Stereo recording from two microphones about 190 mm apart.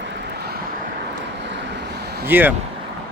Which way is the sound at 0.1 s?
60° right (ahead or behind).